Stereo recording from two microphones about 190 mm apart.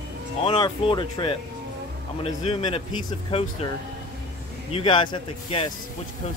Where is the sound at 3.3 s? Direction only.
30° left (ahead or behind).